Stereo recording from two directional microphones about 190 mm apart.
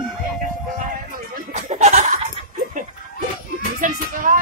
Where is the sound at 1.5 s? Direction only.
40° right (ahead or behind).